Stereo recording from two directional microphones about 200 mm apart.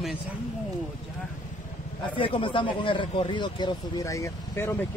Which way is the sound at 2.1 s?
25° left (ahead or behind).